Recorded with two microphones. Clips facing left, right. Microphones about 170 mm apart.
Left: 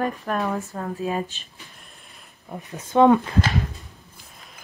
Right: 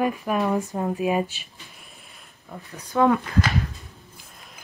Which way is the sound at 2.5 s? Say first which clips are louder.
Left 5 dB; 20° left (ahead or behind).